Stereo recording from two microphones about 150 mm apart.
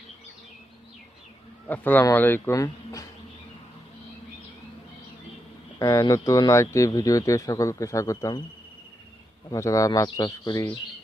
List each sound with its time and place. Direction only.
1.6 s speech: 10° left (ahead or behind)
5.8 s speech: 20° left (ahead or behind)
9.5 s speech: 20° left (ahead or behind)